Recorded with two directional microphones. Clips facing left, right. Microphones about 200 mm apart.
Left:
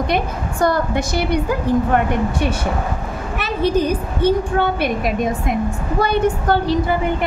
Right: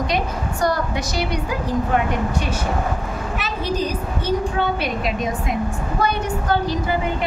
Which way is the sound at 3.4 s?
55° left (ahead or behind).